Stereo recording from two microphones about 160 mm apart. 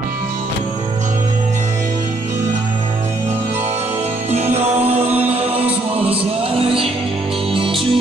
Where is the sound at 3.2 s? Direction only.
45° right (ahead or behind).